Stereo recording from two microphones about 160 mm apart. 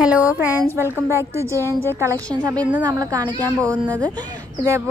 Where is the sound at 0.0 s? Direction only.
5° right (ahead or behind).